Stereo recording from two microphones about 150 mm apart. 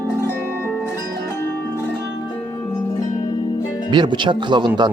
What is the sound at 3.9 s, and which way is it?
Speech, 30° right (ahead or behind).